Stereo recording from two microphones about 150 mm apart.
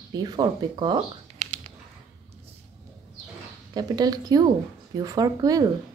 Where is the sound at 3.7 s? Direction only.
25° right (ahead or behind).